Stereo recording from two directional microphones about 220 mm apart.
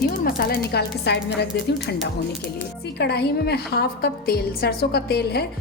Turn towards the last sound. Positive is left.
turn(degrees=45)  # may be behind; listen again after turning